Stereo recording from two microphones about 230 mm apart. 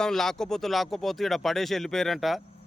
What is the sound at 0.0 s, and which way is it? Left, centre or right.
Speech, centre.